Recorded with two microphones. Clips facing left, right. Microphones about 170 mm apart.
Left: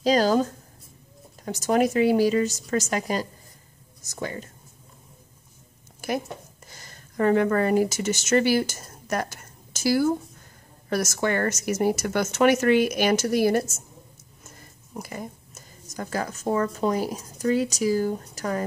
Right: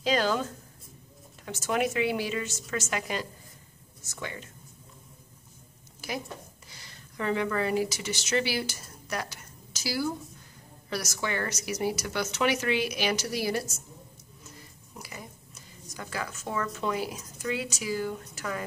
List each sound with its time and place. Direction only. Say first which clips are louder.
0.0 s a woman's voice: left 6 dB; 40° left (ahead or behind)
5.9 s a sound: left 7 dB; 55° left (ahead or behind)
6.7 s speech: left 3 dB; 45° left (ahead or behind)